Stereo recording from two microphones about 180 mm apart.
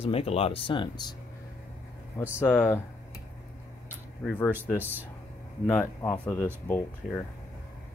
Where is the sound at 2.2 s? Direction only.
10° left (ahead or behind).